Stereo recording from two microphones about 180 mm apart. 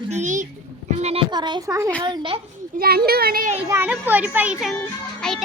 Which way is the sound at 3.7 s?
10° right (ahead or behind).